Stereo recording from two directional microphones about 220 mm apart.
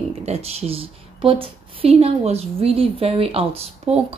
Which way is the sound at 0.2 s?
30° right (ahead or behind).